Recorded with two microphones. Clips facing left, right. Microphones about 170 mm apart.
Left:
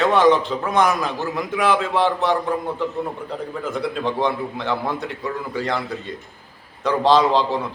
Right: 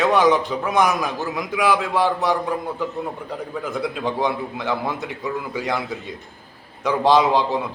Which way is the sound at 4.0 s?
15° right (ahead or behind).